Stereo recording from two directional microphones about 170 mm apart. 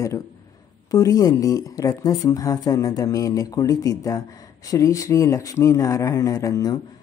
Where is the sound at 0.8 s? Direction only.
20° left (ahead or behind).